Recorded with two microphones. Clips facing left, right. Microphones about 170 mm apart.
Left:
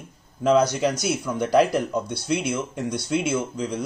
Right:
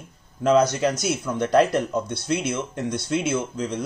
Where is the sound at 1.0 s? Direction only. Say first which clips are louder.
Even; 5° left (ahead or behind).